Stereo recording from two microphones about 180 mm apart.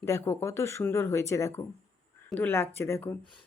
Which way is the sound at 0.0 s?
15° left (ahead or behind).